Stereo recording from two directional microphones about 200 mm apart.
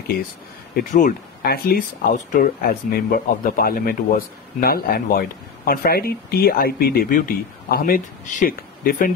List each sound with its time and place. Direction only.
0.7 s speech: 40° left (ahead or behind)